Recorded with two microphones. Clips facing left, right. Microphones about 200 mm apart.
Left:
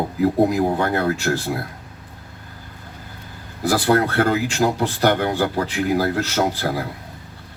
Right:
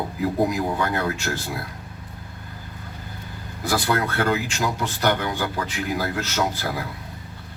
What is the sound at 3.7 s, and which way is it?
Speech, 35° left (ahead or behind).